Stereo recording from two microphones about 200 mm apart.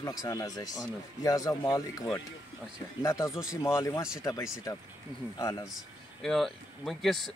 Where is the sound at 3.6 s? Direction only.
15° left (ahead or behind).